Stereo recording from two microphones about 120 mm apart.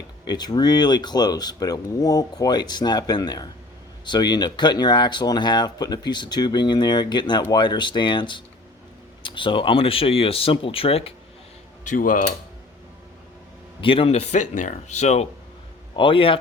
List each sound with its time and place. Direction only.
0.3 s speech: 35° left (ahead or behind); by 11.1 s 50° left (ahead or behind)
13.8 s speech: 50° left (ahead or behind); by 15.3 s 70° left (ahead or behind)
16.0 s speech: 45° left (ahead or behind)